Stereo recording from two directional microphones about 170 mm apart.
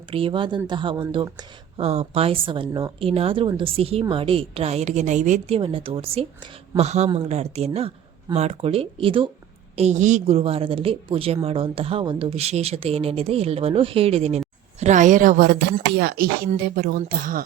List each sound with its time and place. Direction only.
0.1 s speech: 30° right (ahead or behind)
5.5 s speech: 35° right (ahead or behind); by 17.4 s 55° right (ahead or behind)